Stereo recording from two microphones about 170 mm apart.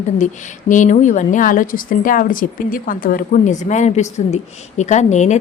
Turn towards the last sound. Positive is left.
turn(degrees=45)  # may be behind; listen again after turning